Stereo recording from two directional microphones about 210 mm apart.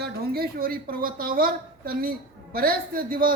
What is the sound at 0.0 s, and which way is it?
A woman's voice, 45° right (ahead or behind).